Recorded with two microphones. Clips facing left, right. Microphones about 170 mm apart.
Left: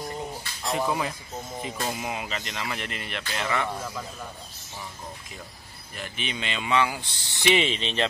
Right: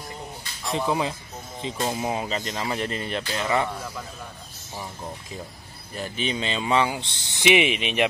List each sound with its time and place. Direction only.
0.7 s speech: 25° right (ahead or behind)
5.9 s speech: 35° right (ahead or behind); by 8.1 s 15° right (ahead or behind)